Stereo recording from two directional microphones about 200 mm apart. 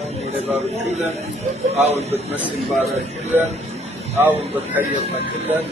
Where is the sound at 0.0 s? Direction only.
30° right (ahead or behind).